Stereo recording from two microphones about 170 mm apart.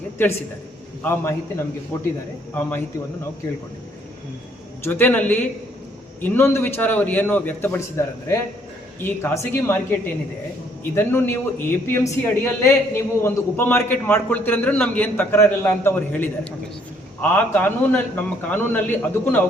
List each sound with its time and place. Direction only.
1.0 s a man's voice: 15° left (ahead or behind)
4.9 s a man's voice: 10° left (ahead or behind)